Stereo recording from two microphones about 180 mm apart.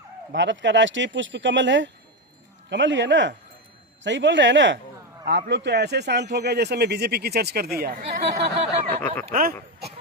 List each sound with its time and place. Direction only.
0.3 s speech: 90° right
5.5 s speech: 75° right (ahead or behind); by 8.5 s 55° right (ahead or behind)
8.6 s a sound: 10° left (ahead or behind)
9.2 s speech: 50° right (ahead or behind)